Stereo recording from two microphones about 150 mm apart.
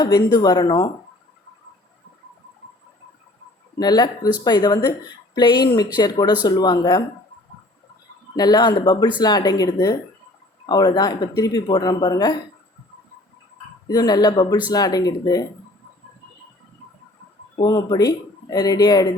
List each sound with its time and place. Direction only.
0.0 s speech: 25° left (ahead or behind)
3.8 s speech: 25° left (ahead or behind)
8.4 s speech: 25° left (ahead or behind)
13.8 s speech: 25° left (ahead or behind)
17.6 s speech: 25° left (ahead or behind)